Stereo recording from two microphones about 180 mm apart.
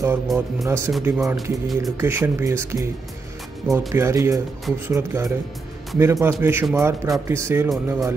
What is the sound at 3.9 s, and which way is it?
Speech, 15° right (ahead or behind).